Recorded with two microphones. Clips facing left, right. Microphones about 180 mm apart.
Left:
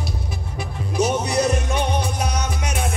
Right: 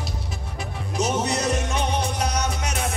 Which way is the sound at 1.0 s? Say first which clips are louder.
Left 4 dB; 10° left (ahead or behind).